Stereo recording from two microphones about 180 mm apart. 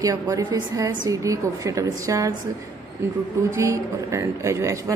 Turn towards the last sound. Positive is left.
turn(degrees=-15)  # may be behind; listen again after turning